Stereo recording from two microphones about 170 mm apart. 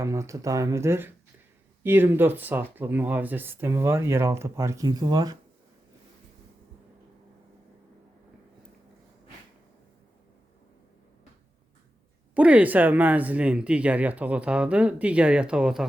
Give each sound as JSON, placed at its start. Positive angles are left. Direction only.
{"t": 0.0, "sound": "speech", "side_deg": -15}
{"t": 12.3, "sound": "speech", "side_deg": -10}